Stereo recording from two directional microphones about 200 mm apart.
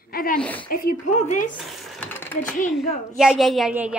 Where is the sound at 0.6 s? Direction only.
40° left (ahead or behind).